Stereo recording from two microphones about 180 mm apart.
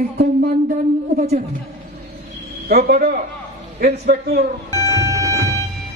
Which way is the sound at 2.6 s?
60° right (ahead or behind).